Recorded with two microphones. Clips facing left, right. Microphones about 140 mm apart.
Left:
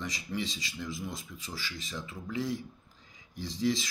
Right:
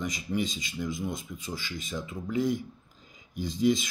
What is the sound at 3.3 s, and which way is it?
Speech, 20° right (ahead or behind).